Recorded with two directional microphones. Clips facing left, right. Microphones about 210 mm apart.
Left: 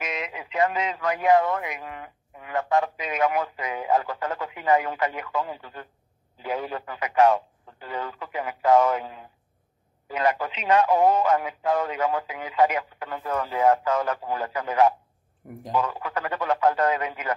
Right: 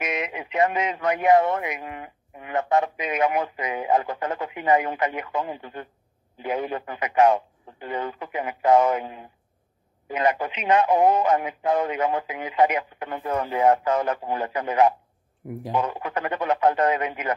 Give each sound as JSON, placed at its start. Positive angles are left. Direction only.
{"t": 0.0, "sound": "speech", "side_deg": -20}